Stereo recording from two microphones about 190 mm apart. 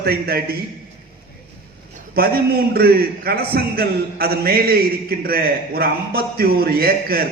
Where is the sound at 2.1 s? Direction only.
55° right (ahead or behind).